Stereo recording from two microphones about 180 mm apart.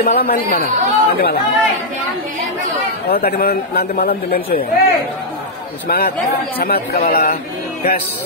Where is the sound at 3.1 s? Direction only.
60° left (ahead or behind).